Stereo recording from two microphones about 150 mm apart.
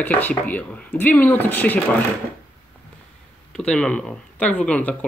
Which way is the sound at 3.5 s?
5° left (ahead or behind).